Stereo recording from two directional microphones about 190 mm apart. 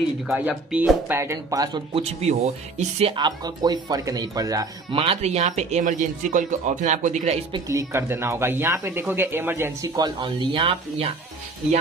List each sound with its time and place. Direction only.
0.3 s speech: 10° right (ahead or behind); by 7.3 s 40° right (ahead or behind)
7.5 s speech: 15° right (ahead or behind)